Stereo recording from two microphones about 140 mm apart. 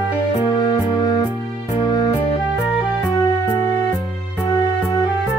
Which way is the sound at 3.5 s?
15° left (ahead or behind).